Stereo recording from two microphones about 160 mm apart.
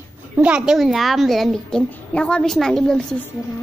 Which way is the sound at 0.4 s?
5° right (ahead or behind).